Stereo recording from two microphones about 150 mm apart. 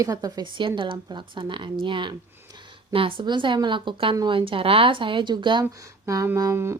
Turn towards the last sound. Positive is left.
turn(degrees=-20)  # may be behind; listen again after turning